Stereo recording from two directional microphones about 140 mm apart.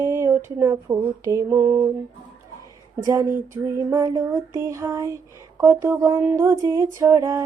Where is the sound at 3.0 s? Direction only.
25° right (ahead or behind).